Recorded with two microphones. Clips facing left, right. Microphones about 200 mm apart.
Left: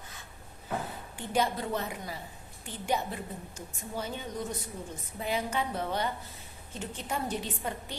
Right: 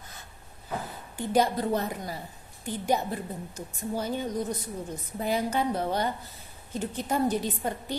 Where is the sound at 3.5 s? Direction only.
40° right (ahead or behind).